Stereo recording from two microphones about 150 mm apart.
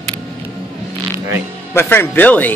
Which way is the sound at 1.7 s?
15° left (ahead or behind).